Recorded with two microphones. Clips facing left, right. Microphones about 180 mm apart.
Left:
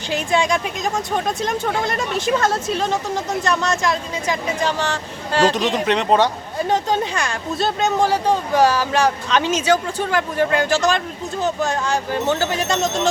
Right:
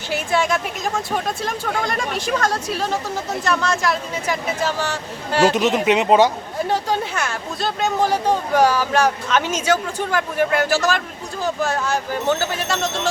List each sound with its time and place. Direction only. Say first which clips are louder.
0.1 s speech: left 1 dB; 15° left (ahead or behind)
5.3 s speech: right 1 dB; 10° right (ahead or behind)
6.7 s speech: left 3 dB; 20° left (ahead or behind)
8.1 s speech: even; 10° right (ahead or behind)
8.9 s speech: even; 10° left (ahead or behind)
9.3 s speech: left 2 dB; 10° right (ahead or behind)
9.6 s speech: left 2 dB; 15° left (ahead or behind)